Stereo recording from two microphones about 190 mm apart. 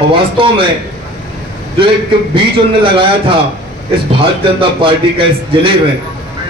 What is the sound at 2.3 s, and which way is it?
A man's voice, 30° right (ahead or behind).